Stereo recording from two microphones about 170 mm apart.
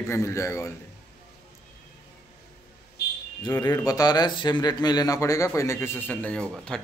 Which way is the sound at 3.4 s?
25° left (ahead or behind).